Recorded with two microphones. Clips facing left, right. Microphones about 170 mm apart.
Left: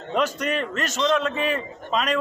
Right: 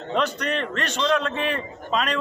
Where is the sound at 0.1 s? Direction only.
5° left (ahead or behind).